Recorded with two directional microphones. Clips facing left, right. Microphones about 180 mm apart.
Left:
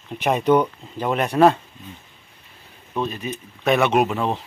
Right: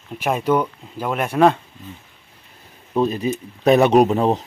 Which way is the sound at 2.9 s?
35° right (ahead or behind).